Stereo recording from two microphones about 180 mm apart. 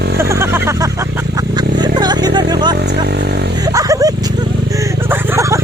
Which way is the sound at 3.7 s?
20° right (ahead or behind).